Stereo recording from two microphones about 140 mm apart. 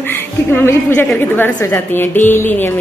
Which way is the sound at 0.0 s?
15° left (ahead or behind).